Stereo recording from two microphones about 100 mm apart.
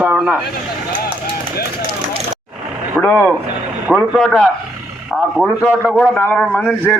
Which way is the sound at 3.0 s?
20° left (ahead or behind).